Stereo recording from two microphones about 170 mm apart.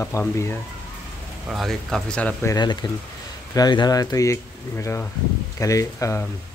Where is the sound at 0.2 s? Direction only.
15° left (ahead or behind).